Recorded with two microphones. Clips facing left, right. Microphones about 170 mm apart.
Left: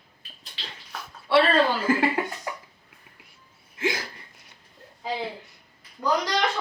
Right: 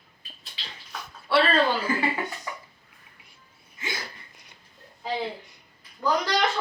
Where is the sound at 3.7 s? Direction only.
90° left.